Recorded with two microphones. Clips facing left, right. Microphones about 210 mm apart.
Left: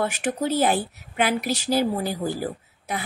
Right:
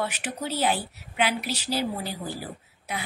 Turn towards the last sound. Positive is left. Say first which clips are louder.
# left 4 dB
turn(degrees=45)  # may be behind; listen again after turning